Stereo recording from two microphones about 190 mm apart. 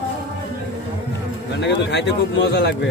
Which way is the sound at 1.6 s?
65° left (ahead or behind).